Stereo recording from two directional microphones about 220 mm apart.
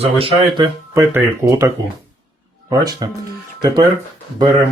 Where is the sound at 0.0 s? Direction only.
25° right (ahead or behind).